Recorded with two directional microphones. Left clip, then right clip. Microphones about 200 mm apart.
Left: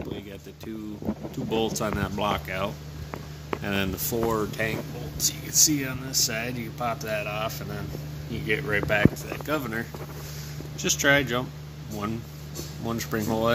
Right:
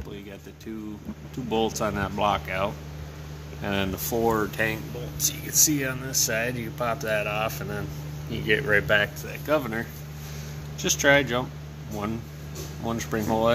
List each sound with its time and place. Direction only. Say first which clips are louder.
1.5 s speech: right 2 dB; centre (ahead or behind)
3.9 s speech: right 1 dB; 15° right (ahead or behind)
4.3 s speech: right 4 dB; 35° right (ahead or behind)
9.5 s speech: right 4 dB; 5° right (ahead or behind)
12.8 s speech: right 1 dB; centre (ahead or behind)